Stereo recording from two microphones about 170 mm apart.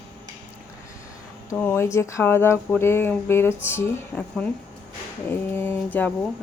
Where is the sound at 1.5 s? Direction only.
15° left (ahead or behind).